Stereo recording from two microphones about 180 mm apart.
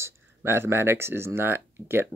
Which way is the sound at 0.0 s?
15° right (ahead or behind).